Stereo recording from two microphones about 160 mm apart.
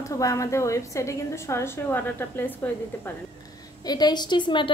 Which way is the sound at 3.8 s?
25° left (ahead or behind).